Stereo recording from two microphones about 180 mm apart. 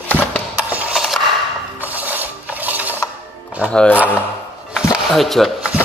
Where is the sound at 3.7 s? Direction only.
5° left (ahead or behind).